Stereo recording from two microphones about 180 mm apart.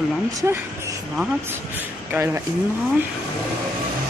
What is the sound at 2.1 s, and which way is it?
Speech, 15° right (ahead or behind).